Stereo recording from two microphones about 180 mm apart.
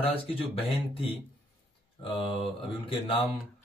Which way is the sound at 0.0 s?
30° left (ahead or behind).